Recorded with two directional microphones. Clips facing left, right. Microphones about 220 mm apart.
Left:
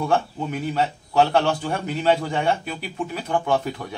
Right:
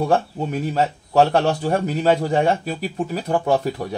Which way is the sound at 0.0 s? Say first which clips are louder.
Right 3 dB; 40° right (ahead or behind).